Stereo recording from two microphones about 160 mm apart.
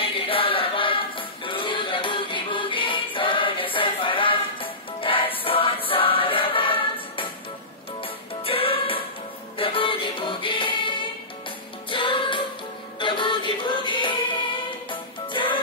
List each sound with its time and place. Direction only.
0.0 s music: 35° left (ahead or behind)